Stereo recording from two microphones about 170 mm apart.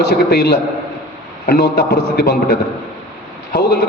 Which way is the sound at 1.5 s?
60° left (ahead or behind).